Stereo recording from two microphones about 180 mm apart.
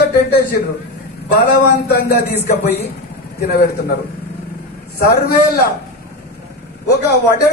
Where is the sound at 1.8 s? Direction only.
65° left (ahead or behind).